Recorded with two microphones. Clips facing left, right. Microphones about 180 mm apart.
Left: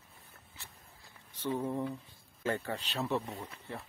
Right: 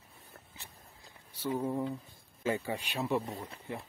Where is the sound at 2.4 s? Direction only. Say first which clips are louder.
Right 2 dB; 10° right (ahead or behind).